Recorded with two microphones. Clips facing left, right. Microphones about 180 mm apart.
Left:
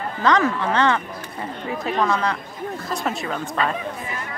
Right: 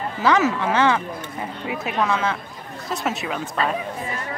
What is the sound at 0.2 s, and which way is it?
Speech, 5° right (ahead or behind).